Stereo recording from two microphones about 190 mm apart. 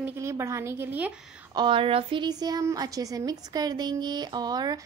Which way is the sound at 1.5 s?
25° right (ahead or behind).